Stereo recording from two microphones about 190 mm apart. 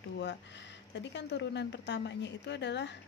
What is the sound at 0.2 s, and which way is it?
Speech, 65° left (ahead or behind).